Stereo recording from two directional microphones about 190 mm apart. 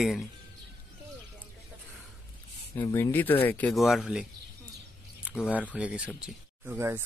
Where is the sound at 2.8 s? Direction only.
15° left (ahead or behind).